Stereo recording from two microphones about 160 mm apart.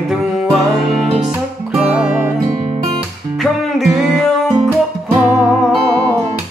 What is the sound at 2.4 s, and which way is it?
Music, 45° right (ahead or behind).